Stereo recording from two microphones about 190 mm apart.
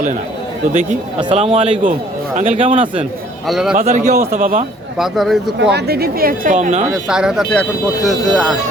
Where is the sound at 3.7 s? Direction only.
40° right (ahead or behind).